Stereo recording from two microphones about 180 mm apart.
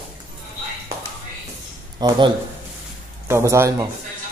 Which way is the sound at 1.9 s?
25° right (ahead or behind).